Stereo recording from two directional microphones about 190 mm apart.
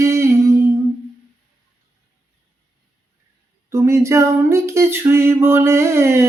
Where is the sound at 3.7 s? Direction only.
15° right (ahead or behind).